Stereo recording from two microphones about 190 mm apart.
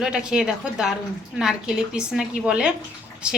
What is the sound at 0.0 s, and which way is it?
Speech, 5° right (ahead or behind).